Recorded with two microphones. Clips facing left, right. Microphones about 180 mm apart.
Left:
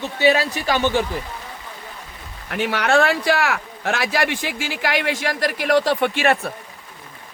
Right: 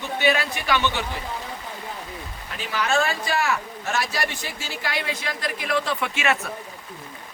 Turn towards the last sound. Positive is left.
turn(degrees=60)  # may be behind; listen again after turning